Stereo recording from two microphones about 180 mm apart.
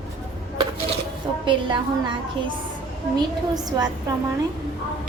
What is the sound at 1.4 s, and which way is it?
Speech, 25° right (ahead or behind).